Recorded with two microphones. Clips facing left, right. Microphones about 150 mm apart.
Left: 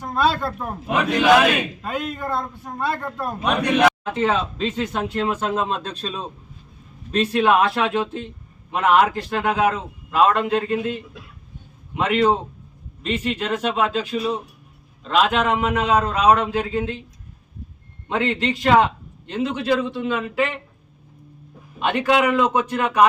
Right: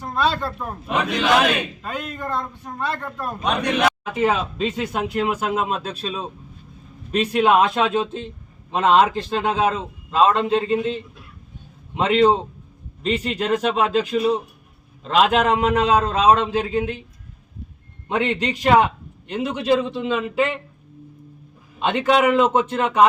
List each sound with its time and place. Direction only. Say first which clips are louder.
0.1 s a man's voice: left 1 dB; 5° left (ahead or behind)
4.0 s a man's voice: even; 10° right (ahead or behind)
11.9 s a man's voice: right 2 dB; 30° right (ahead or behind)
15.3 s a man's voice: right 2 dB; 40° right (ahead or behind); by 17.0 s 15° right (ahead or behind)
18.1 s a man's voice: even; 15° right (ahead or behind)
21.8 s a man's voice: right 1 dB; 20° right (ahead or behind)